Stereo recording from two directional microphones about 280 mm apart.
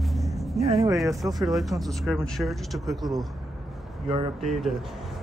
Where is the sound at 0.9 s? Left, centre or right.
Centre.